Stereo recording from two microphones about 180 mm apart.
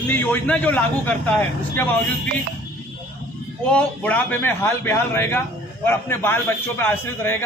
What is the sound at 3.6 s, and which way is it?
A man's voice, 10° left (ahead or behind).